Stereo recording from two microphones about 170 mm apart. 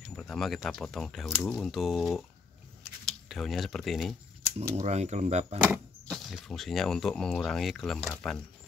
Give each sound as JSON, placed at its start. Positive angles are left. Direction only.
{"t": 0.1, "sound": "speech", "side_deg": 5}
{"t": 4.7, "sound": "speech", "side_deg": -40}
{"t": 6.0, "sound": "speech", "side_deg": 0}